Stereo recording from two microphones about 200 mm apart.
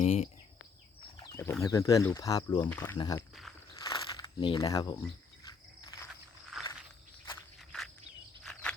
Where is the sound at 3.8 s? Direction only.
20° left (ahead or behind).